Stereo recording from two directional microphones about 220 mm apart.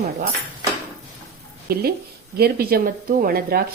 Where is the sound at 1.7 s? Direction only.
45° right (ahead or behind).